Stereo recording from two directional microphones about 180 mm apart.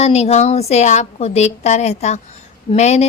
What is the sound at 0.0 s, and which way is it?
Speech, 35° left (ahead or behind).